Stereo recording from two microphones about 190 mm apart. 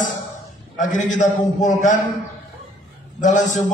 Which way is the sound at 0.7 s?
40° left (ahead or behind).